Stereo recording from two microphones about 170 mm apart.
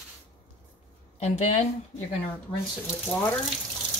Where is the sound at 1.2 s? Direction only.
40° left (ahead or behind).